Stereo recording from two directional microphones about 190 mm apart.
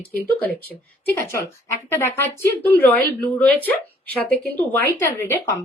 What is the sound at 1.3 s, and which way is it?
A woman's voice, 15° left (ahead or behind).